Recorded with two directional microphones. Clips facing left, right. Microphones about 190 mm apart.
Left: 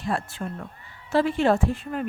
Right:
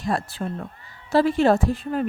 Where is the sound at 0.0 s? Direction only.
35° right (ahead or behind).